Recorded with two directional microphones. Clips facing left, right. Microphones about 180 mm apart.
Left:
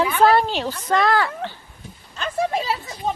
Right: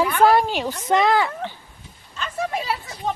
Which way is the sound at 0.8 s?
20° right (ahead or behind).